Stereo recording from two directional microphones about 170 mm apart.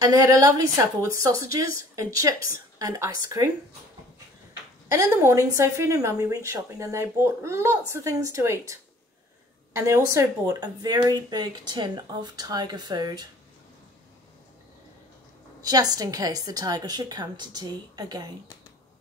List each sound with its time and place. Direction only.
0.0 s speech: 20° right (ahead or behind)
4.9 s speech: 15° right (ahead or behind)
9.8 s speech: 20° right (ahead or behind)
15.6 s speech: 20° right (ahead or behind)